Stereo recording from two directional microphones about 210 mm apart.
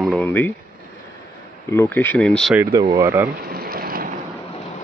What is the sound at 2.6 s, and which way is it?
Speech, 15° right (ahead or behind).